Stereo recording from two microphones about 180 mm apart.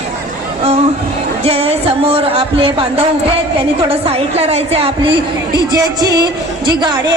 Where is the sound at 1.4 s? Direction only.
35° right (ahead or behind).